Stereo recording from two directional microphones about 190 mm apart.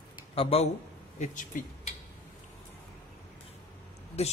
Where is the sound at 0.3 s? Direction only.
30° left (ahead or behind).